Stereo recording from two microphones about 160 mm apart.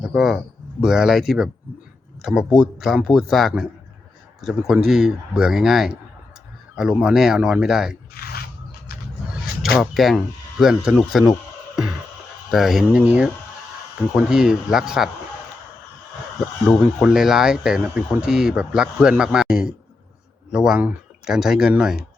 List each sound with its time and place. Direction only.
0.0 s a man's voice: 5° right (ahead or behind)
4.7 s speech: 5° right (ahead or behind)
8.1 s a sound: 70° left (ahead or behind)
9.7 s speech: centre (ahead or behind)
12.5 s speech: centre (ahead or behind)
16.7 s speech: centre (ahead or behind)